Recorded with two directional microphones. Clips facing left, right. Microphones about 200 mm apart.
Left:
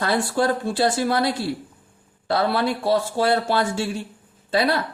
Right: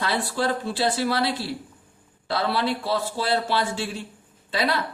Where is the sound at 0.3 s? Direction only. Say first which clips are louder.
Left 4 dB; 50° left (ahead or behind).